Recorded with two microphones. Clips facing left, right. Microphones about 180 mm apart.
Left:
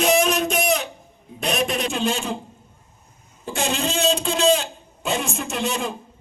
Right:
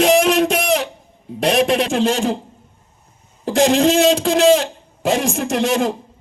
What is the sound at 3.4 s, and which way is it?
A man's voice, 90° right.